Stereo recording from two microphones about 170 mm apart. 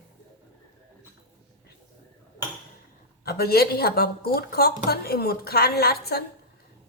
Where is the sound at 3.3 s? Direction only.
65° left (ahead or behind).